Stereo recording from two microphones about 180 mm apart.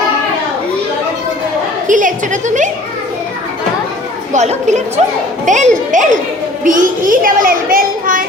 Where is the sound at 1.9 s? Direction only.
45° right (ahead or behind).